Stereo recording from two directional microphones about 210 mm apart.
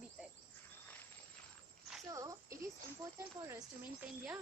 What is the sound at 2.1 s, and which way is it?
Speech, 15° right (ahead or behind).